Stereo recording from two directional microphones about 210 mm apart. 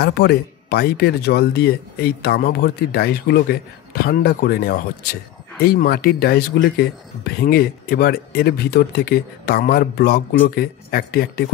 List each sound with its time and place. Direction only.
0.0 s speech: 50° left (ahead or behind)